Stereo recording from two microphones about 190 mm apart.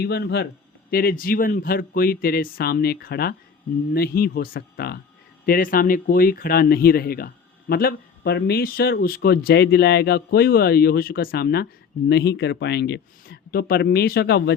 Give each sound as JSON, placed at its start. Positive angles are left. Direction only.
{"t": 0.0, "sound": "speech", "side_deg": 60}